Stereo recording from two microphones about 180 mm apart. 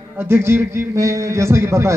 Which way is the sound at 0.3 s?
15° right (ahead or behind).